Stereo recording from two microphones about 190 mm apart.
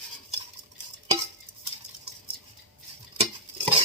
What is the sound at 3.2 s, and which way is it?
Stir, 35° right (ahead or behind).